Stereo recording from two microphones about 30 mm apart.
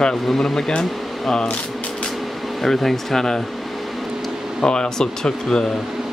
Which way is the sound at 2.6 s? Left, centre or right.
Centre.